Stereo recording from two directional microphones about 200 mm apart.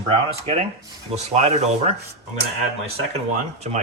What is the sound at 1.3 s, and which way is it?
Speech, 30° right (ahead or behind).